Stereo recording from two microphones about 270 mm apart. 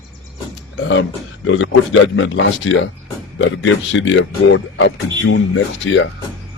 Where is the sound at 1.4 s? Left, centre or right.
Left.